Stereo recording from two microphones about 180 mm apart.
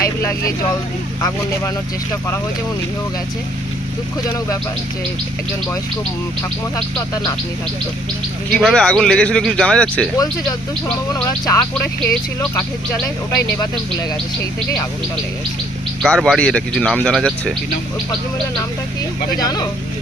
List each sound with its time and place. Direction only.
0.0 s speech: 15° left (ahead or behind)
8.5 s a man's voice: 5° left (ahead or behind)
11.1 s insect: 20° left (ahead or behind)
12.0 s speech: 15° left (ahead or behind)
16.0 s a man's voice: 5° left (ahead or behind)
19.4 s insect: 20° left (ahead or behind)